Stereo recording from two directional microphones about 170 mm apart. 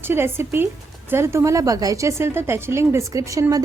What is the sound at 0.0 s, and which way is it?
A woman's voice, 15° right (ahead or behind).